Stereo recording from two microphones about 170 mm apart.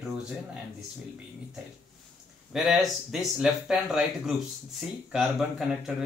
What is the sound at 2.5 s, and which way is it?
Speech, centre (ahead or behind).